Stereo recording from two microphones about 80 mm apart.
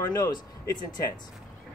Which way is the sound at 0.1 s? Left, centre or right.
Left.